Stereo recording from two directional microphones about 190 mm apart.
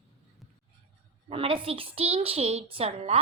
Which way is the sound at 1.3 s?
30° right (ahead or behind).